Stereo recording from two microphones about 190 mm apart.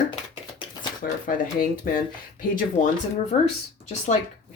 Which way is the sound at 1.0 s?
55° left (ahead or behind).